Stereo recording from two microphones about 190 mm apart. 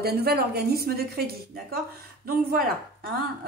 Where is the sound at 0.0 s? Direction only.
55° right (ahead or behind).